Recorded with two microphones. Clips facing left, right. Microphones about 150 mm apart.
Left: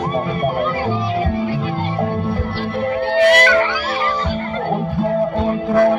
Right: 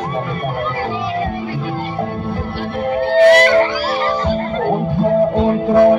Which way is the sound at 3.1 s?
35° right (ahead or behind).